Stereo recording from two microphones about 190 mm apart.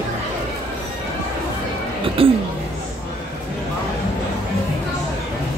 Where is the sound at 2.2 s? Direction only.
30° right (ahead or behind).